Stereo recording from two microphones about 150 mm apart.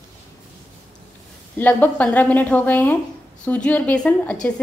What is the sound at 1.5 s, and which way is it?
A woman's voice, 10° left (ahead or behind).